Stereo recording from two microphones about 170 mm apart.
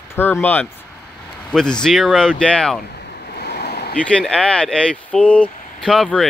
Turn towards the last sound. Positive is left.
turn(degrees=0)  # may be behind; listen again after turning